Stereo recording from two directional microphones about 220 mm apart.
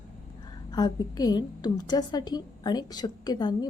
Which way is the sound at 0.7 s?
20° left (ahead or behind).